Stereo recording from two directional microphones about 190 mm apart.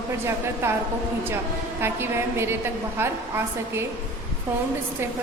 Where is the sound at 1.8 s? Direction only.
15° right (ahead or behind).